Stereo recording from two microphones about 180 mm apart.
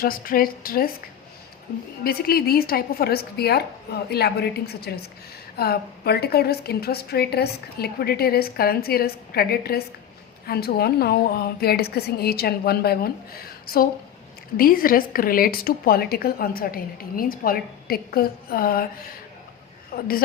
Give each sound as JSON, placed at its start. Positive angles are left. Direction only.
{"t": 0.0, "sound": "a woman's voice", "side_deg": 55}
{"t": 2.0, "sound": "a woman's voice", "side_deg": 55}
{"t": 19.9, "sound": "a woman's voice", "side_deg": 55}